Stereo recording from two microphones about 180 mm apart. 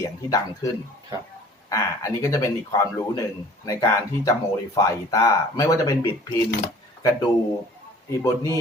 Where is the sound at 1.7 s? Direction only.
15° left (ahead or behind).